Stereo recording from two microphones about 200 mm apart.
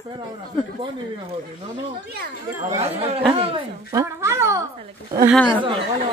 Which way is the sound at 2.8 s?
30° right (ahead or behind).